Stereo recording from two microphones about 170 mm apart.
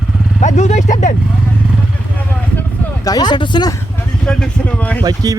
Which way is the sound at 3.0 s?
25° left (ahead or behind).